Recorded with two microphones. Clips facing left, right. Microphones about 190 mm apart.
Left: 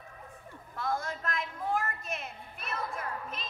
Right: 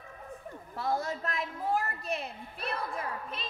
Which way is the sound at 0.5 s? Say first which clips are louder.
Right 2 dB; 35° right (ahead or behind).